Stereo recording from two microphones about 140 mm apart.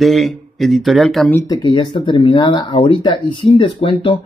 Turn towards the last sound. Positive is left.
turn(degrees=40)  # may be behind; listen again after turning